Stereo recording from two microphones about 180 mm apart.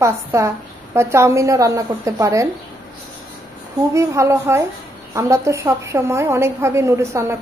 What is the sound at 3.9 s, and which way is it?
A woman's voice, 15° right (ahead or behind).